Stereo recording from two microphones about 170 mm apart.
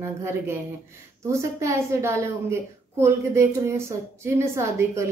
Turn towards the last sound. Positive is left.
turn(degrees=-15)  # may be behind; listen again after turning